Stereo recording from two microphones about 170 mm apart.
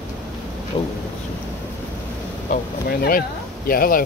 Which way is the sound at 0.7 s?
35° left (ahead or behind).